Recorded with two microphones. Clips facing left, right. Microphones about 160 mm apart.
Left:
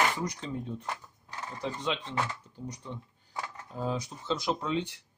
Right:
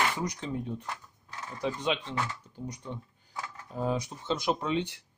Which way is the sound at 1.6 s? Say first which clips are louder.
Right 3 dB; 15° right (ahead or behind).